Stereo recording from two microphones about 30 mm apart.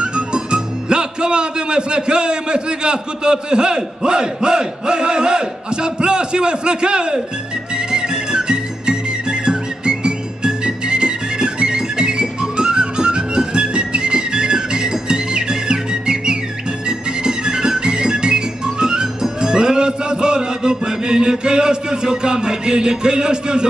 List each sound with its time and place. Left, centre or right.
0.0 s speech: right
7.7 s music: right